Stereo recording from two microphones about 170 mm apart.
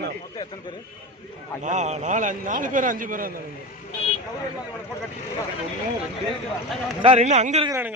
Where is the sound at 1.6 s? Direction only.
45° right (ahead or behind).